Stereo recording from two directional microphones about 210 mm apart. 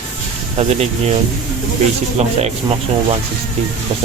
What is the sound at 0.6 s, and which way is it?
Speech, 30° right (ahead or behind).